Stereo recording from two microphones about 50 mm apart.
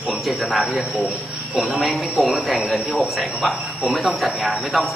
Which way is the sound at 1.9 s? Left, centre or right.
Centre.